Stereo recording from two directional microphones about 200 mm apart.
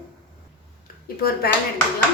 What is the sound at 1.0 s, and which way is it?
Speech, 50° left (ahead or behind).